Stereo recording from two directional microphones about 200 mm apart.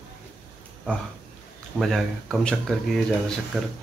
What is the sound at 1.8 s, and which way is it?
Speech, centre (ahead or behind).